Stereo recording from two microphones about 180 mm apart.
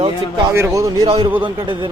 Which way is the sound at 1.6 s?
25° right (ahead or behind).